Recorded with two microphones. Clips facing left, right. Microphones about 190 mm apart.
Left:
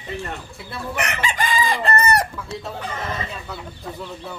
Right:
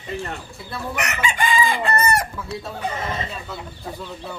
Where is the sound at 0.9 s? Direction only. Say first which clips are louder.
Left 1 dB; 30° left (ahead or behind).